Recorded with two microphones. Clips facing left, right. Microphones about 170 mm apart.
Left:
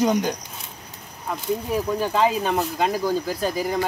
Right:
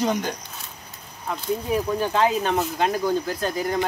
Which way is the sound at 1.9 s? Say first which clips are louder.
Left 2 dB; centre (ahead or behind).